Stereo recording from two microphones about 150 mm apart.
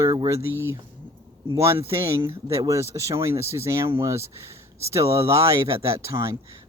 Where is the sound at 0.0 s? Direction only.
25° right (ahead or behind).